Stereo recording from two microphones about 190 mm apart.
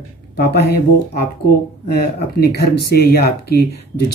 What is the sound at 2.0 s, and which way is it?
Speech, 55° left (ahead or behind).